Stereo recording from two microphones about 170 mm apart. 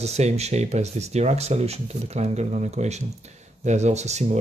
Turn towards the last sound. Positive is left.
turn(degrees=-40)  # may be behind; listen again after turning